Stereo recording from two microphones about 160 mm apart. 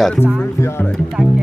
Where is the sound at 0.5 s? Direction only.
15° left (ahead or behind).